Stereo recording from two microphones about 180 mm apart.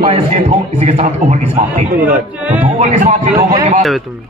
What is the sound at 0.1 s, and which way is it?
A man's voice, 40° right (ahead or behind).